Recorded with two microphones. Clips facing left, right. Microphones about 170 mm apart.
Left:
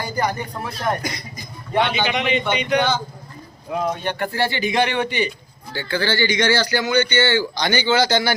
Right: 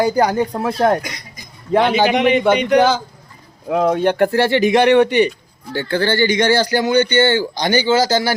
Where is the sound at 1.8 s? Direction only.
45° right (ahead or behind).